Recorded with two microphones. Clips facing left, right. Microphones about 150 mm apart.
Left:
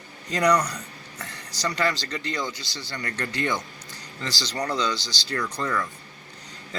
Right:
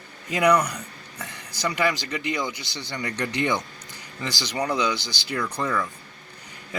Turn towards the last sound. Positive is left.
turn(degrees=-10)  # may be behind; listen again after turning